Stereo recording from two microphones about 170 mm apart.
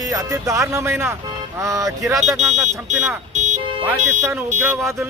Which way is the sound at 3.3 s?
45° right (ahead or behind).